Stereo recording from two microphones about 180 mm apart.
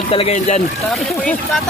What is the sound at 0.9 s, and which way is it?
Speech, 5° left (ahead or behind).